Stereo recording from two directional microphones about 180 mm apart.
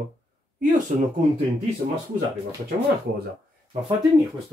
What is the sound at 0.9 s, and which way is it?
Speech, 45° right (ahead or behind).